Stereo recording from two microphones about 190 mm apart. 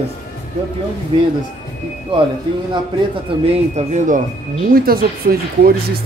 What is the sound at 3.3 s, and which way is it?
Speech, 25° right (ahead or behind).